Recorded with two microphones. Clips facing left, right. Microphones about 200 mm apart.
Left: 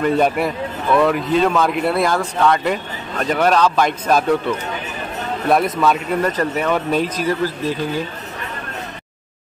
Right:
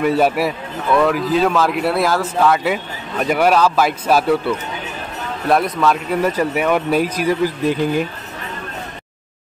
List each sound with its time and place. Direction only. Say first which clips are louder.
0.0 s speech: right 1 dB; 5° right (ahead or behind)